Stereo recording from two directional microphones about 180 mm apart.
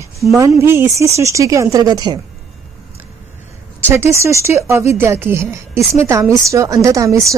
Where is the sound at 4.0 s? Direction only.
15° right (ahead or behind).